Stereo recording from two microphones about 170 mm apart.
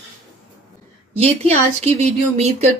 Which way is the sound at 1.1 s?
35° right (ahead or behind).